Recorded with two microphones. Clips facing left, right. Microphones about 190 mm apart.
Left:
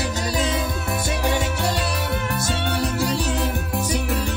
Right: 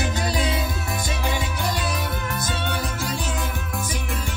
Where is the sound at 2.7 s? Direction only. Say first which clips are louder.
Left 5 dB; 35° left (ahead or behind).